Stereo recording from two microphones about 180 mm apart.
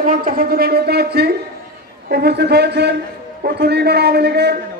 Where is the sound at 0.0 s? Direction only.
50° right (ahead or behind).